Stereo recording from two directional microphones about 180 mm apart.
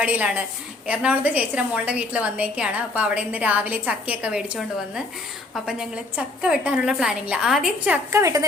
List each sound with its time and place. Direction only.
0.0 s a woman's voice: 10° right (ahead or behind)
6.1 s a woman's voice: 5° right (ahead or behind)
8.1 s a woman's voice: 20° right (ahead or behind)